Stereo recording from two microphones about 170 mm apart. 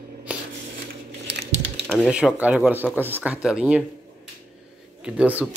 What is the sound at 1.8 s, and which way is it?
Speech, centre (ahead or behind).